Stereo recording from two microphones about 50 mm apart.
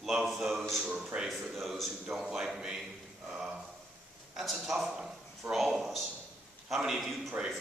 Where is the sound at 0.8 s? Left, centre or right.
Centre.